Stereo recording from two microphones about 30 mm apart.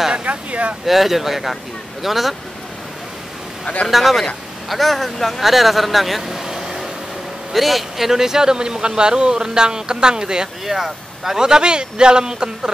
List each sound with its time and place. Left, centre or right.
0.2 s speech: right
0.8 s speech: centre
3.9 s speech: centre
6.4 s vehicle: centre
7.5 s speech: centre
8.1 s a man's voice: centre
10.6 s speech: centre
11.3 s a man's voice: right